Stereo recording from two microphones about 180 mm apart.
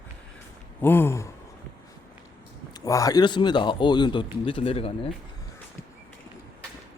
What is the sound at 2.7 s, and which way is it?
Speech, 20° left (ahead or behind).